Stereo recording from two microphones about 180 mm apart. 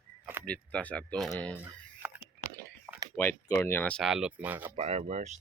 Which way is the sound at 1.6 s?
10° right (ahead or behind).